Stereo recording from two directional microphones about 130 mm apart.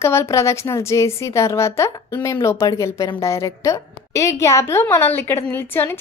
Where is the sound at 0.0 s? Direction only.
20° left (ahead or behind).